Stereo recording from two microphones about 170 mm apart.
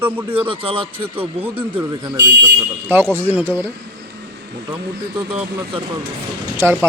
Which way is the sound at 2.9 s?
10° right (ahead or behind).